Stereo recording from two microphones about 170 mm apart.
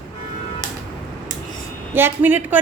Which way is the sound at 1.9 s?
10° right (ahead or behind).